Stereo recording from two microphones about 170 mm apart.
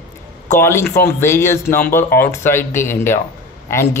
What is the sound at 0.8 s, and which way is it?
Speech, 70° left (ahead or behind).